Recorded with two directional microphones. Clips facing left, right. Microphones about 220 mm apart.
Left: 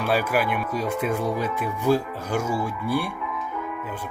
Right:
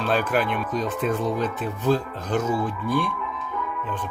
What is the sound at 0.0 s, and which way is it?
Speech, 10° left (ahead or behind).